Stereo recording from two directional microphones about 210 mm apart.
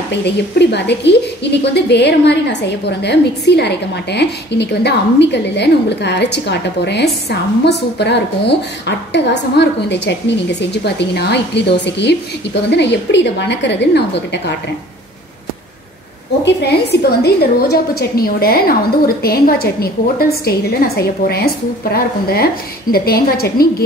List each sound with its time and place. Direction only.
0.1 s a woman's voice: 55° left (ahead or behind)
16.4 s a woman's voice: 50° left (ahead or behind)